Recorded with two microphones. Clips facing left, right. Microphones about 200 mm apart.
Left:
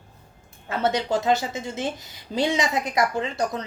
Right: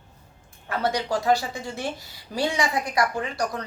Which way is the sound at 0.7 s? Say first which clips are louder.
Left 2 dB; 25° left (ahead or behind).